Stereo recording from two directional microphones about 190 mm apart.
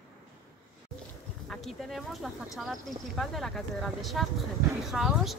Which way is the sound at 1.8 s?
Centre (ahead or behind).